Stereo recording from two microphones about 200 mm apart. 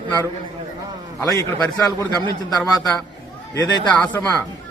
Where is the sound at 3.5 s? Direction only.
20° left (ahead or behind).